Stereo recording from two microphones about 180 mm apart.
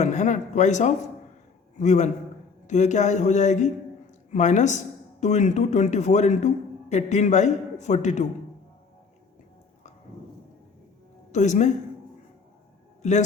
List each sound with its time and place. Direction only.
0.0 s a man's voice: 40° left (ahead or behind)
11.3 s speech: 40° left (ahead or behind)
13.0 s a man's voice: 40° left (ahead or behind)